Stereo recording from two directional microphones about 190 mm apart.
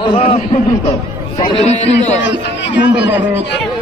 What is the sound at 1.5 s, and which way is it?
Speech, 35° left (ahead or behind).